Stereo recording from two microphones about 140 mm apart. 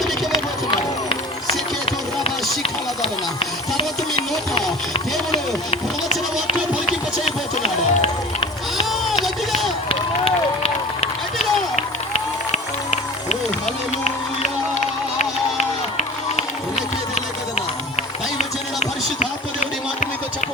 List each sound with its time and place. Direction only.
0.3 s run: 35° left (ahead or behind)
5.3 s run: 45° left (ahead or behind)
9.0 s run: centre (ahead or behind)
9.9 s run: 45° left (ahead or behind)
11.8 s music: 55° left (ahead or behind)
16.7 s a sound: 50° left (ahead or behind)
18.3 s run: 55° left (ahead or behind)